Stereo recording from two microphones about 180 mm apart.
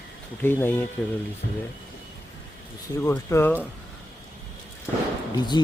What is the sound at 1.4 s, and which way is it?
Speech, 65° left (ahead or behind).